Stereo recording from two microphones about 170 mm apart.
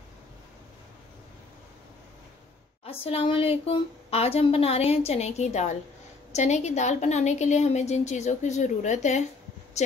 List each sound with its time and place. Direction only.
2.8 s a woman's voice: 35° left (ahead or behind)